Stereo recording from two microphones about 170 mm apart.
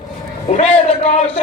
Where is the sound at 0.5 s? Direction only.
35° left (ahead or behind).